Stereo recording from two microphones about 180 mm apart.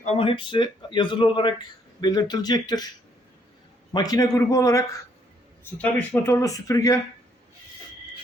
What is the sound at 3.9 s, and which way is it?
Speech, 20° left (ahead or behind).